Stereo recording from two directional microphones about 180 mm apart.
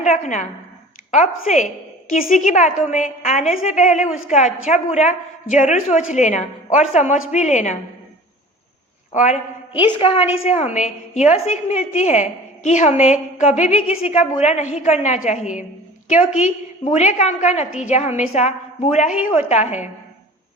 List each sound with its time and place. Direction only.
0.0 s a sound: 40° left (ahead or behind)
1.5 s a woman's voice: 40° left (ahead or behind)
9.1 s a woman's voice: 40° left (ahead or behind)
10.0 s a woman's voice: 30° left (ahead or behind)